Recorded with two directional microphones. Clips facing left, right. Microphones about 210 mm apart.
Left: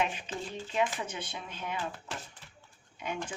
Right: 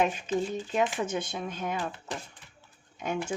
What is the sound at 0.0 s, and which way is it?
Speech, 45° right (ahead or behind).